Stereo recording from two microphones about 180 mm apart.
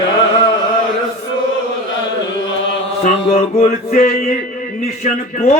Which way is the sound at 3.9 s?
50° left (ahead or behind).